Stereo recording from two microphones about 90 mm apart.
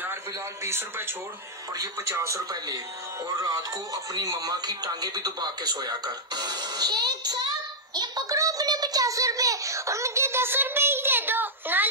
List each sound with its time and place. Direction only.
0.7 s speech: 25° right (ahead or behind)
2.1 s speech: 35° right (ahead or behind)
7.9 s child singing: 50° right (ahead or behind)
8.4 s a sound: 40° right (ahead or behind); by 11.9 s 20° right (ahead or behind)